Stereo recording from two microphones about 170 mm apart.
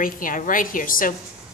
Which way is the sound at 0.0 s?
55° left (ahead or behind).